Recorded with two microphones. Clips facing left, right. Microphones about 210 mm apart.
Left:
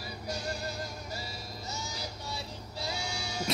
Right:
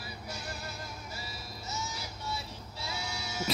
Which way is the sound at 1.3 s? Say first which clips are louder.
Left 1 dB; 30° left (ahead or behind).